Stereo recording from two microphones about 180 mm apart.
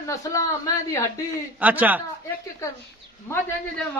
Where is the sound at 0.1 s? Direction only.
20° left (ahead or behind).